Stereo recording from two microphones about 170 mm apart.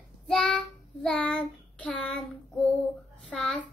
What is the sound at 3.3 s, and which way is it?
Child singing, centre (ahead or behind).